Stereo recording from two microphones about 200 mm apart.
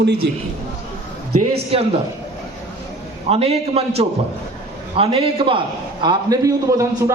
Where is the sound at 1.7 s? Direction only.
30° right (ahead or behind).